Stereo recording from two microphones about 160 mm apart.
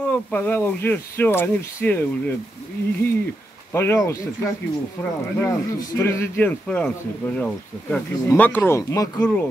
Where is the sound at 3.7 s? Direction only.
15° left (ahead or behind).